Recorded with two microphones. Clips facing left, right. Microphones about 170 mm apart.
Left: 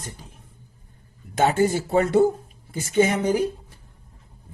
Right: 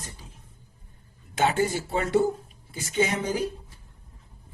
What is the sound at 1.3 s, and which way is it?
Speech, 45° left (ahead or behind).